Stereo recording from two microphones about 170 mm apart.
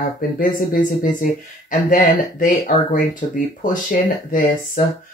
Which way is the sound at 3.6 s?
50° left (ahead or behind).